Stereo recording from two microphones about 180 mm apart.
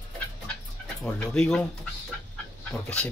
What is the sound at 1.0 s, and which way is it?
Speech, 5° left (ahead or behind).